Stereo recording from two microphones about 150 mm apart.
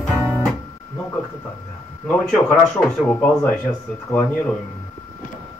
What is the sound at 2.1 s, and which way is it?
Speech, 10° left (ahead or behind).